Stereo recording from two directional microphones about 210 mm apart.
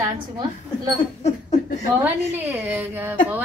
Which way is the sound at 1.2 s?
30° left (ahead or behind).